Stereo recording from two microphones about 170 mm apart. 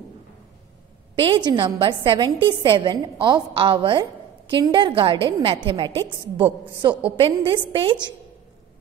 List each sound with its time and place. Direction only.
1.1 s a woman's voice: 30° right (ahead or behind)